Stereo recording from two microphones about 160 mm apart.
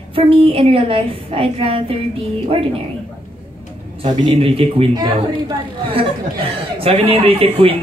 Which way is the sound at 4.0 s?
35° right (ahead or behind).